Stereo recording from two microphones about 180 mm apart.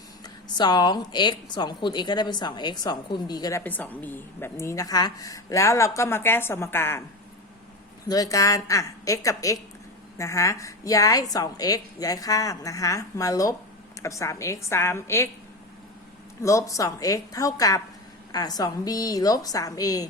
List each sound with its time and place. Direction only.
0.4 s a woman's voice: 25° left (ahead or behind)
3.6 s a woman's voice: 10° left (ahead or behind)
8.0 s a woman's voice: 20° left (ahead or behind)
16.4 s a woman's voice: 15° left (ahead or behind)